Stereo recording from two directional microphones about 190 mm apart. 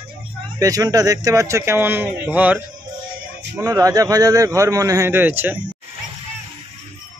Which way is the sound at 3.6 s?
15° right (ahead or behind).